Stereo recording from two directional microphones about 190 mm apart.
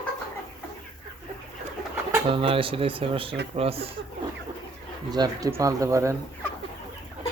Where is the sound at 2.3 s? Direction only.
30° right (ahead or behind).